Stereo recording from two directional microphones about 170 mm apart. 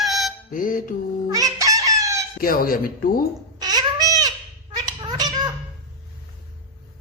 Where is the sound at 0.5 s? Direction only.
55° left (ahead or behind).